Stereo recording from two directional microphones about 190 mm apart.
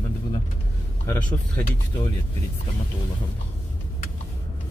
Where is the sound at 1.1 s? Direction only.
15° left (ahead or behind).